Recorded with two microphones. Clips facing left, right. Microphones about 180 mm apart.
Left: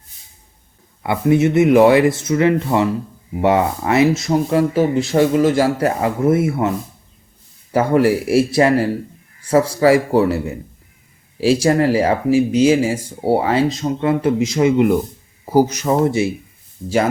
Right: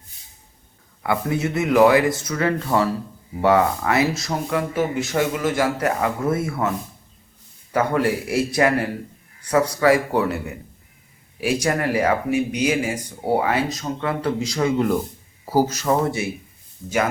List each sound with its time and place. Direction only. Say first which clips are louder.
1.0 s speech: left 8 dB; 25° left (ahead or behind)
7.7 s speech: left 6 dB; 30° left (ahead or behind)